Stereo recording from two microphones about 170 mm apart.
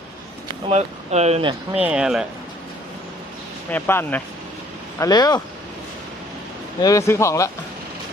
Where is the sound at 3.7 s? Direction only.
10° left (ahead or behind).